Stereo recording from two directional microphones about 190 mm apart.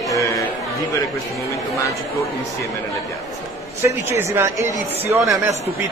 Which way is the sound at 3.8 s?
15° right (ahead or behind).